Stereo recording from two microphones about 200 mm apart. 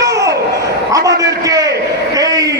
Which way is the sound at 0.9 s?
15° right (ahead or behind).